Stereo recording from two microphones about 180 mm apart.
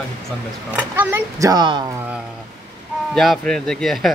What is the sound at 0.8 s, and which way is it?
Speech, 10° right (ahead or behind).